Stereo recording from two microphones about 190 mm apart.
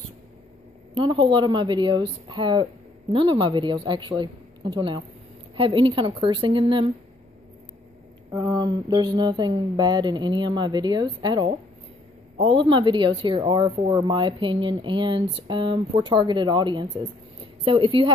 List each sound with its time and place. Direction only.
0.9 s a woman's voice: 25° right (ahead or behind)
8.3 s a woman's voice: 20° right (ahead or behind)